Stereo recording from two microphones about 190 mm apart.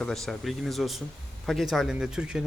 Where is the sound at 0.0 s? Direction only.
Centre (ahead or behind).